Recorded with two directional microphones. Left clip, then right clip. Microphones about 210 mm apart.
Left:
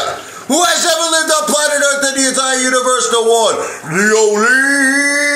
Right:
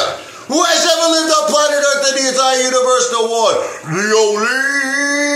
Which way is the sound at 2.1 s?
15° left (ahead or behind).